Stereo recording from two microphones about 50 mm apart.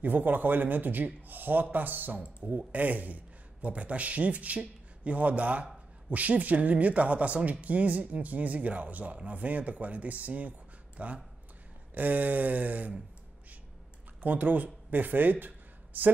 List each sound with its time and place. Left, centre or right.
0.0 s a man's voice: right
14.2 s a man's voice: right